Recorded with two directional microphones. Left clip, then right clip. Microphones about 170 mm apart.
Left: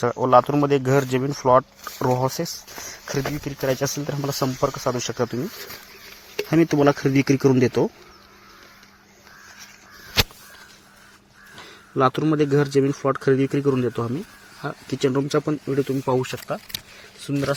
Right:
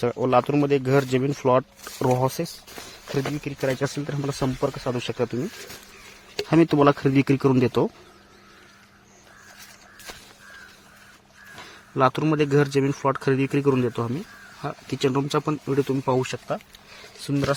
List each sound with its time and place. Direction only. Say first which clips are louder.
0.0 s speech: left 4 dB; 10° right (ahead or behind)
1.2 s speech: left 3 dB; 25° right (ahead or behind)
2.7 s speech: even; centre (ahead or behind); by 5.1 s 15° left (ahead or behind)
5.1 s speech: left 1 dB; centre (ahead or behind)
6.5 s speech: even; 15° right (ahead or behind)
11.5 s speech: left 2 dB; centre (ahead or behind)
17.2 s a man's voice: even; 20° right (ahead or behind)